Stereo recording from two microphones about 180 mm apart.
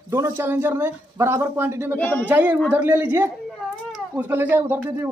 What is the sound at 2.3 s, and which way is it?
Speech, 10° right (ahead or behind).